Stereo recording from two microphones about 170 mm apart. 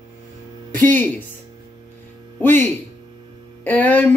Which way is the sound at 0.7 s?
10° left (ahead or behind).